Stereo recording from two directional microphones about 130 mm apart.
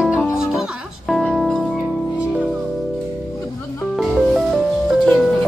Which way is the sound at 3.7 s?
Centre (ahead or behind).